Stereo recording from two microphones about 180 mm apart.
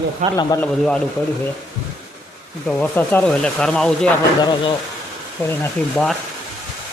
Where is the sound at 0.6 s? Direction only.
5° left (ahead or behind).